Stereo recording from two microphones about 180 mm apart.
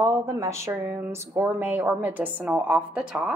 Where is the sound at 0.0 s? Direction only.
15° right (ahead or behind).